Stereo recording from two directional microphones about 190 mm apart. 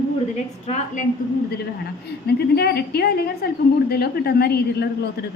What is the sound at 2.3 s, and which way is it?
A woman's voice, 60° left (ahead or behind).